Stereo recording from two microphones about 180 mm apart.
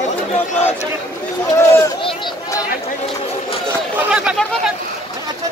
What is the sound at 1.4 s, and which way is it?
Speech, 15° left (ahead or behind).